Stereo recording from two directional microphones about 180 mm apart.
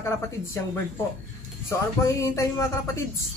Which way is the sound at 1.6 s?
15° left (ahead or behind).